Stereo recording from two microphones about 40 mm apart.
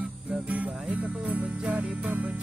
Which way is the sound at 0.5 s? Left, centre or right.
Right.